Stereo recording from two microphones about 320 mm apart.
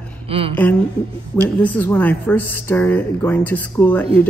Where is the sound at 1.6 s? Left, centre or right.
Centre.